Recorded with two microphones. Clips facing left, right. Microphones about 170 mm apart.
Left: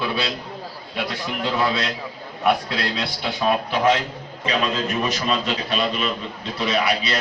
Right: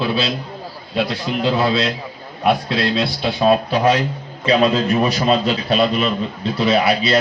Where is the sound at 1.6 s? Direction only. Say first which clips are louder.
Right 2 dB; 30° right (ahead or behind).